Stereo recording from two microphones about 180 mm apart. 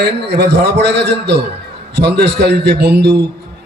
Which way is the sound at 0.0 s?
70° right (ahead or behind).